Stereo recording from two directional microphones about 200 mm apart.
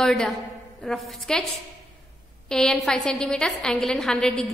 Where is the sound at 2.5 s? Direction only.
5° left (ahead or behind).